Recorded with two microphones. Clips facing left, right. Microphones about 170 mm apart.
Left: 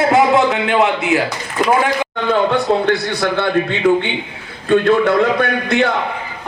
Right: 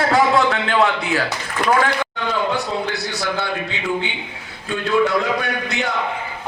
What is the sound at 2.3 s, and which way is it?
A man's voice, 55° left (ahead or behind).